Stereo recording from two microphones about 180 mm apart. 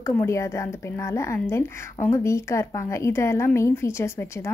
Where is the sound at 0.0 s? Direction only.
15° left (ahead or behind).